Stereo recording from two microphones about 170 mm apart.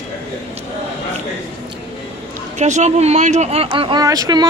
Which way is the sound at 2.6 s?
45° right (ahead or behind).